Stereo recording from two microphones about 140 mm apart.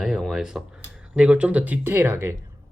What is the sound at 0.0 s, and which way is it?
Speech, 5° right (ahead or behind).